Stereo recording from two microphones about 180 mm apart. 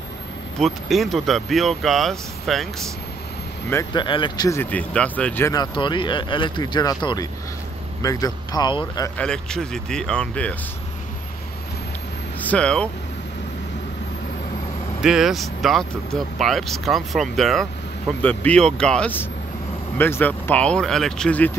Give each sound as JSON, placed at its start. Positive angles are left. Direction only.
{"t": 0.6, "sound": "speech", "side_deg": 0}
{"t": 3.9, "sound": "speech", "side_deg": 25}
{"t": 9.1, "sound": "speech", "side_deg": 5}
{"t": 12.4, "sound": "speech", "side_deg": 5}
{"t": 15.0, "sound": "speech", "side_deg": -5}